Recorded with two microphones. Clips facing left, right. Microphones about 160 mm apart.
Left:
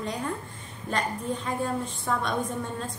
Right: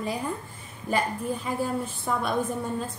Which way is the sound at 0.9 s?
5° right (ahead or behind).